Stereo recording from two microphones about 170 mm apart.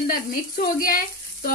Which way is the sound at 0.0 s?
60° left (ahead or behind).